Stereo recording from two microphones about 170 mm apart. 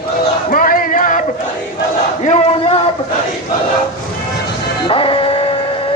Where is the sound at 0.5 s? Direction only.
55° left (ahead or behind).